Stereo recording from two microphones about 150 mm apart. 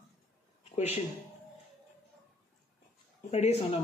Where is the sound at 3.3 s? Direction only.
45° left (ahead or behind).